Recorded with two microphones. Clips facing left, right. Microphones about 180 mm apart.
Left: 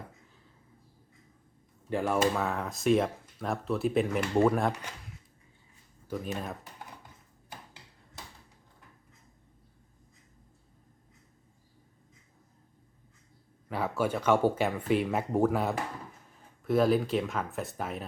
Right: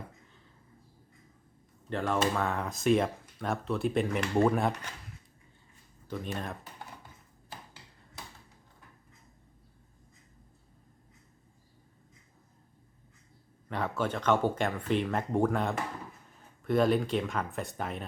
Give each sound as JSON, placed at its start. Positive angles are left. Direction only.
{"t": 1.9, "sound": "speech", "side_deg": 10}
{"t": 6.1, "sound": "speech", "side_deg": 5}
{"t": 13.7, "sound": "speech", "side_deg": 5}